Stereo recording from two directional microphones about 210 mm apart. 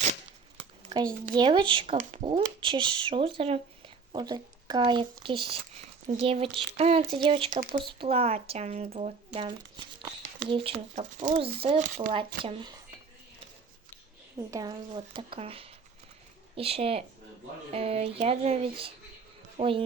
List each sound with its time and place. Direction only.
0.0 s tearing: 35° right (ahead or behind)
1.3 s speech: 20° right (ahead or behind)
14.3 s speech: 15° right (ahead or behind)